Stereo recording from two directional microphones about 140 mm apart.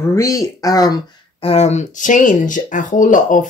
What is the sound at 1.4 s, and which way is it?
Speech, 50° left (ahead or behind).